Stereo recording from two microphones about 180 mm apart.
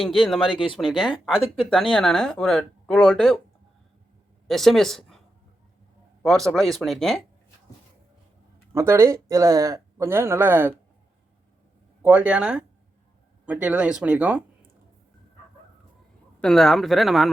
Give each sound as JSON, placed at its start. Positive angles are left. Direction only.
{"t": 0.0, "sound": "speech", "side_deg": 0}
{"t": 0.5, "sound": "speech", "side_deg": 30}
{"t": 0.8, "sound": "speech", "side_deg": 0}
{"t": 4.4, "sound": "speech", "side_deg": 0}
{"t": 6.2, "sound": "speech", "side_deg": 0}
{"t": 8.7, "sound": "speech", "side_deg": -15}
{"t": 12.0, "sound": "speech", "side_deg": -5}
{"t": 16.4, "sound": "speech", "side_deg": 0}